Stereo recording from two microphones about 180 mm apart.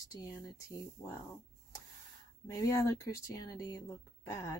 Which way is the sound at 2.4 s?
20° left (ahead or behind).